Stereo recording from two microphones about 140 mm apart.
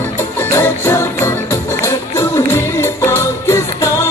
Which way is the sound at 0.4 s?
15° left (ahead or behind).